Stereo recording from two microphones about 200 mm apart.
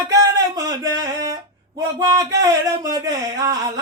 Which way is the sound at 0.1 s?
15° right (ahead or behind).